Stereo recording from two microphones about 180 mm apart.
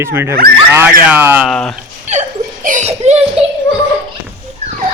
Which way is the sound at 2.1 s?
40° right (ahead or behind).